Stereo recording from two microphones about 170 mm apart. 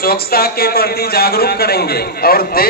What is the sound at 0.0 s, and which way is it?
Speech, 65° left (ahead or behind).